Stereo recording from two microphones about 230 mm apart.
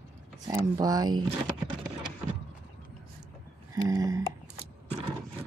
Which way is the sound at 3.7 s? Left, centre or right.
Centre.